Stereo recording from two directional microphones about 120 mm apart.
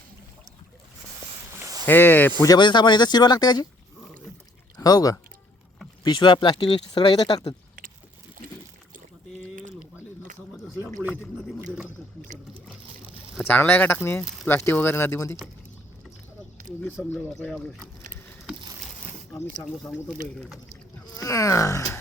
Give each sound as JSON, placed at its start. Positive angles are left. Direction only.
{"t": 1.5, "sound": "a sound", "side_deg": -30}
{"t": 1.9, "sound": "speech", "side_deg": 15}
{"t": 2.6, "sound": "speech", "side_deg": 40}
{"t": 4.8, "sound": "speech", "side_deg": 30}
{"t": 13.4, "sound": "speech", "side_deg": 15}
{"t": 16.8, "sound": "speech", "side_deg": 10}
{"t": 21.0, "sound": "speech", "side_deg": 30}